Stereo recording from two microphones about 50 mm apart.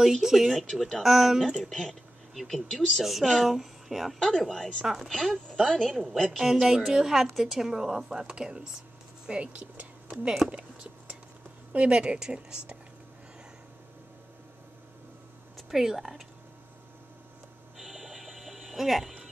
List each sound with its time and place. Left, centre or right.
0.0 s speech: centre
0.6 s speech: centre
1.0 s speech: centre
1.6 s speech: centre
3.0 s speech: centre
4.8 s a woman's voice: centre
5.1 s speech: centre
6.4 s a woman's voice: centre
9.6 s whispering: right
10.2 s a woman's voice: centre
10.5 s a sound: centre
11.7 s a woman's voice: right
15.5 s speech: centre
17.7 s music: centre